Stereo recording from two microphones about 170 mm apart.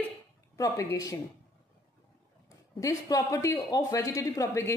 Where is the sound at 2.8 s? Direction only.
20° left (ahead or behind).